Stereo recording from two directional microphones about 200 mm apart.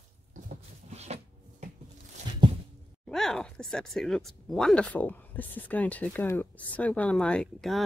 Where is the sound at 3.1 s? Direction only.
Centre (ahead or behind).